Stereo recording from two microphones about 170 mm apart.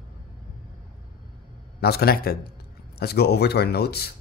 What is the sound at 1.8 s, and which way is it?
Speech, 70° left (ahead or behind).